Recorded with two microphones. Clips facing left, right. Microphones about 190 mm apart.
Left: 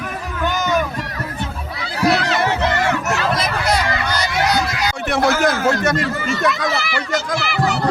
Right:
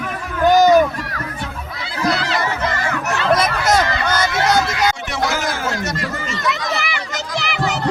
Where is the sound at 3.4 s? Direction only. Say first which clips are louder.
Right 3 dB; 50° right (ahead or behind).